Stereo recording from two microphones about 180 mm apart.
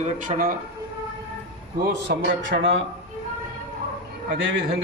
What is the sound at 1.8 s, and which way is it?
Speech, 60° right (ahead or behind).